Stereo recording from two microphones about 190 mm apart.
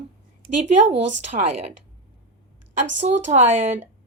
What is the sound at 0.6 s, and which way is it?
Speech, 35° right (ahead or behind).